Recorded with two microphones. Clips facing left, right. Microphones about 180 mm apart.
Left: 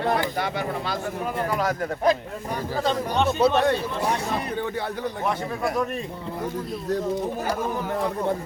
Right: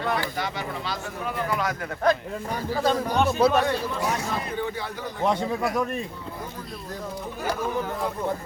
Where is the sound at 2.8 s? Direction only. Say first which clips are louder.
Right 1 dB; centre (ahead or behind).